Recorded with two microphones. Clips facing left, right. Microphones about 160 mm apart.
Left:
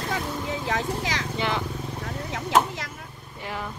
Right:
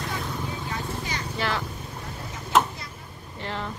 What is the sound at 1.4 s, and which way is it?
Vehicle, 20° left (ahead or behind).